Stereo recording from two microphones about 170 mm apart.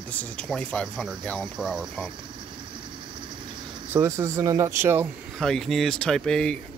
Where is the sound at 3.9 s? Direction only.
15° right (ahead or behind).